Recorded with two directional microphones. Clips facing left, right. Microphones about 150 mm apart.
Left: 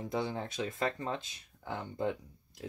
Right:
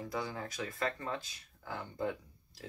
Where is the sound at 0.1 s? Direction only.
25° left (ahead or behind).